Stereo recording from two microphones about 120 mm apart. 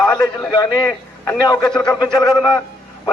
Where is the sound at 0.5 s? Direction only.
30° left (ahead or behind).